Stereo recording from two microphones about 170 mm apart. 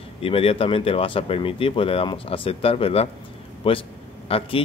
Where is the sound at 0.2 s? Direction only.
35° left (ahead or behind).